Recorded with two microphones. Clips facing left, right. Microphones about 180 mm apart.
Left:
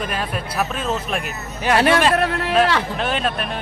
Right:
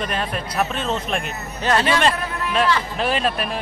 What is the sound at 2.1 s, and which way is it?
Speech, 75° left (ahead or behind).